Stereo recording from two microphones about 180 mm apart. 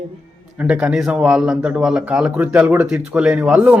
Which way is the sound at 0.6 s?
5° right (ahead or behind).